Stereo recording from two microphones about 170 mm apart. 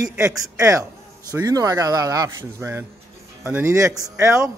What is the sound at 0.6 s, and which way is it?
A man's voice, 20° right (ahead or behind).